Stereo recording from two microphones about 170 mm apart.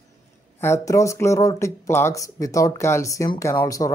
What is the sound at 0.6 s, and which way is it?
Speech, 15° left (ahead or behind).